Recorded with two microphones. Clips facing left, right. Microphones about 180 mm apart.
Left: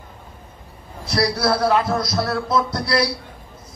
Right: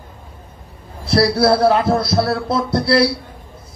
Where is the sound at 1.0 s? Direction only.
30° right (ahead or behind).